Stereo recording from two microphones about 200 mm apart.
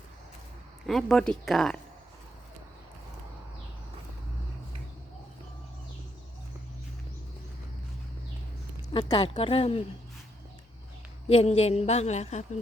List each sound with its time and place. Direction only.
0.9 s speech: centre (ahead or behind)
8.9 s speech: 20° left (ahead or behind)
11.3 s a woman's voice: 30° left (ahead or behind)